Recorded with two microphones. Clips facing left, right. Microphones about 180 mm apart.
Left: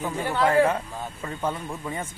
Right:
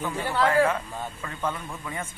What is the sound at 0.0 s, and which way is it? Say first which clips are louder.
A man's voice: left 1 dB; 20° left (ahead or behind).